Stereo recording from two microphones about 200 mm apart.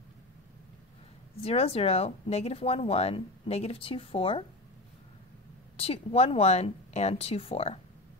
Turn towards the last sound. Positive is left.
turn(degrees=30)  # may be behind; listen again after turning